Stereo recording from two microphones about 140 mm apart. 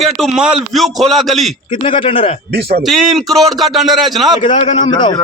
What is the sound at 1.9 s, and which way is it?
Speech, 40° left (ahead or behind).